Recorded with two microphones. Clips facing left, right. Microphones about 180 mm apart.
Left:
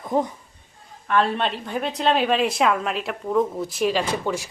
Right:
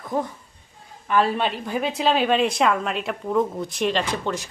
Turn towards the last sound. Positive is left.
turn(degrees=10)  # may be behind; listen again after turning